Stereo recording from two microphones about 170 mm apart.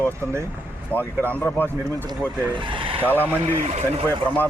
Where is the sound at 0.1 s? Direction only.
15° right (ahead or behind).